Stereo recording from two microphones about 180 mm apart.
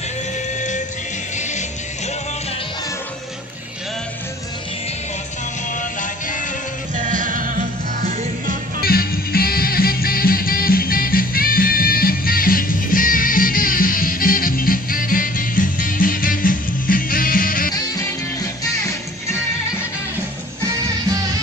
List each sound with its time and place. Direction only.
0.6 s music: 45° left (ahead or behind)
5.8 s music: 45° left (ahead or behind)
7.0 s music: 45° right (ahead or behind)
8.8 s music: 55° left (ahead or behind)